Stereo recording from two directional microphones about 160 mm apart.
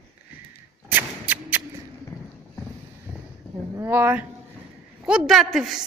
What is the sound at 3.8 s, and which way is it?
A man's voice, 10° right (ahead or behind).